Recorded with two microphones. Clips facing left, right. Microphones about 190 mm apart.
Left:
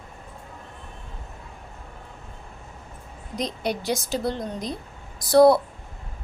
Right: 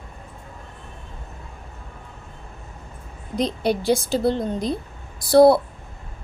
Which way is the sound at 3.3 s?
30° right (ahead or behind).